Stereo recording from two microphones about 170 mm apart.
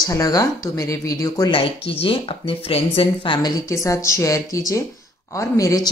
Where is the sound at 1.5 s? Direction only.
35° left (ahead or behind).